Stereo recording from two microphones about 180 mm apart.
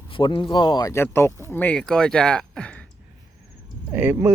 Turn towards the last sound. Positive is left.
turn(degrees=-10)  # may be behind; listen again after turning